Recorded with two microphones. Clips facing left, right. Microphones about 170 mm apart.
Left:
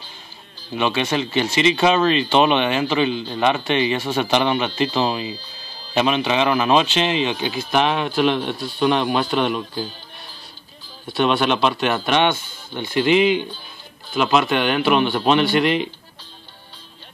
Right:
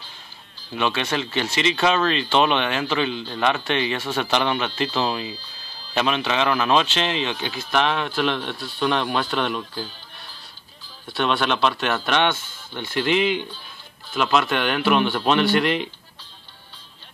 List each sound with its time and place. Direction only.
0.7 s speech: 5° left (ahead or behind)
11.1 s speech: 5° left (ahead or behind)